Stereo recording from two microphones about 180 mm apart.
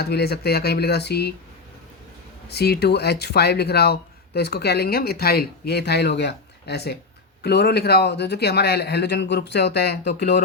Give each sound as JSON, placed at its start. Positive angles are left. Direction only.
{"t": 0.0, "sound": "speech", "side_deg": 65}
{"t": 2.5, "sound": "speech", "side_deg": 65}